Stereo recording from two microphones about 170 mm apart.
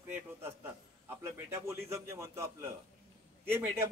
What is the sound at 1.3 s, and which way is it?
A man's voice, 15° right (ahead or behind).